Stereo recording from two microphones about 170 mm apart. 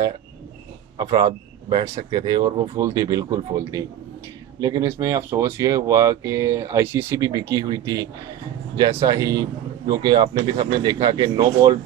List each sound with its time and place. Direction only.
0.9 s speech: 25° right (ahead or behind)